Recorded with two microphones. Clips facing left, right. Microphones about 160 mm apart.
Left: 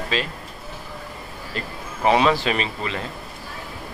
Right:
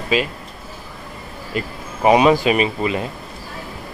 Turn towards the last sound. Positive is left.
turn(degrees=-10)  # may be behind; listen again after turning